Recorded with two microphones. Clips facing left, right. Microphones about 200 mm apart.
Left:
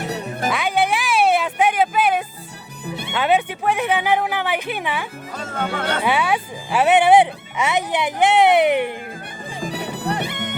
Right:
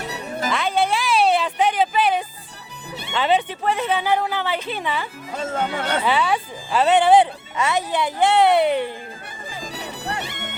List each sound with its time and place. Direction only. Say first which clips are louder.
0.0 s music: left 3 dB; 55° left (ahead or behind)
0.5 s music: even; 15° left (ahead or behind)
2.8 s music: left 6 dB; 55° left (ahead or behind)
3.1 s speech: left 1 dB; 10° left (ahead or behind)
6.1 s speech: left 1 dB; 10° left (ahead or behind)
9.7 s music: left 5 dB; 55° left (ahead or behind)